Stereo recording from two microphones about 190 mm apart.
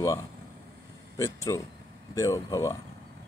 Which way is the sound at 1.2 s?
15° left (ahead or behind).